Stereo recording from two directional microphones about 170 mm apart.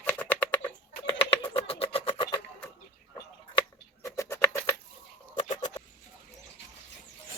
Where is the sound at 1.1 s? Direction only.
30° left (ahead or behind).